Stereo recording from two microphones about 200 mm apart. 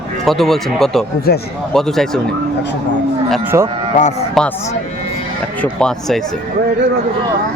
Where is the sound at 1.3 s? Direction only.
50° left (ahead or behind).